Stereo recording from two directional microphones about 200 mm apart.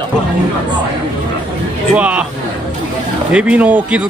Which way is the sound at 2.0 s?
5° right (ahead or behind).